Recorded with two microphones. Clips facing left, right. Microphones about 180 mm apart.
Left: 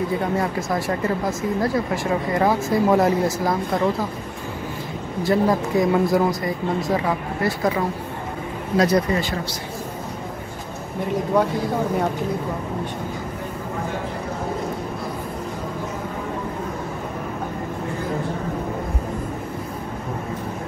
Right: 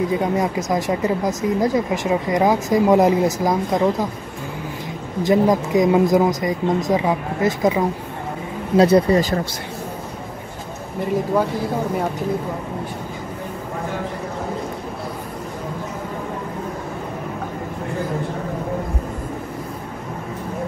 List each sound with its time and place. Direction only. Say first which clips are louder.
0.1 s speech: right 3 dB; 15° right (ahead or behind)
5.2 s speech: right 3 dB; 15° right (ahead or behind); by 9.3 s 35° right (ahead or behind)